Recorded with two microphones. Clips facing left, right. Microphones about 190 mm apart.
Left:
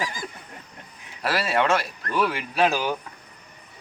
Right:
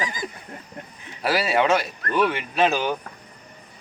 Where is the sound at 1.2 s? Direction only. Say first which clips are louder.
Right 2 dB; centre (ahead or behind).